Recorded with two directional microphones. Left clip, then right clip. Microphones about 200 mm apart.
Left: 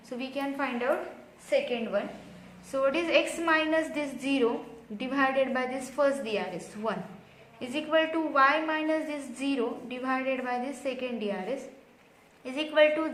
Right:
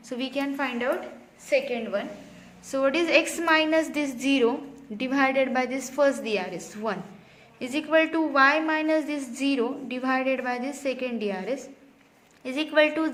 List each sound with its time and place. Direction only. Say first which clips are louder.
0.1 s a woman's voice: right 4 dB; 40° right (ahead or behind)